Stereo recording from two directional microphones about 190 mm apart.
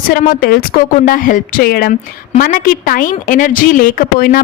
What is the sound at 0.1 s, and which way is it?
A woman's voice, 45° left (ahead or behind).